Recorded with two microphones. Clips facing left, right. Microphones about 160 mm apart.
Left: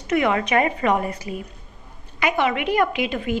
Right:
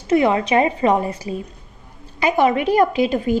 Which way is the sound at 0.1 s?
30° right (ahead or behind).